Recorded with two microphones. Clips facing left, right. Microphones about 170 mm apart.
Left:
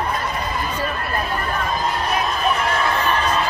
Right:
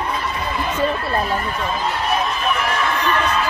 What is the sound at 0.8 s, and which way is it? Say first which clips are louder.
Speech: right 4 dB; 30° right (ahead or behind).